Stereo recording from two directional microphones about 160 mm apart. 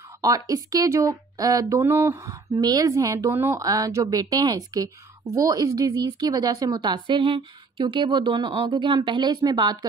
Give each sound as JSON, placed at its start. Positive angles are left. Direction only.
{"t": 0.2, "sound": "speech", "side_deg": -20}